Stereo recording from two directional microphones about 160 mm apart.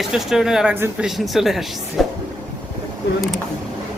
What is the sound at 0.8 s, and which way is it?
Speech, 15° right (ahead or behind).